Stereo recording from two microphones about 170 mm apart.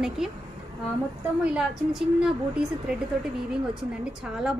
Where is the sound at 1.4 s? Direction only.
5° right (ahead or behind).